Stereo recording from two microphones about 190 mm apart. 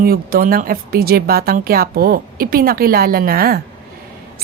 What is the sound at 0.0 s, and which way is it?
Speech, 50° right (ahead or behind).